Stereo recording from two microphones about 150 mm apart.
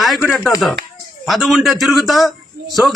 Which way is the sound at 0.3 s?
Centre (ahead or behind).